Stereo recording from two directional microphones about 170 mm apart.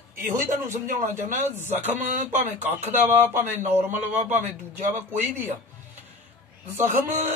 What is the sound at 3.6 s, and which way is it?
Speech, 40° right (ahead or behind).